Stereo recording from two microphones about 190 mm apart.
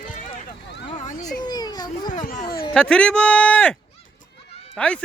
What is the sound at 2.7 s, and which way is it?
Speech, 5° left (ahead or behind).